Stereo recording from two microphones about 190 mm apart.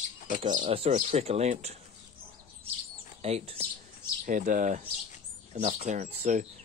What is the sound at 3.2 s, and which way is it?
Speech, 35° right (ahead or behind).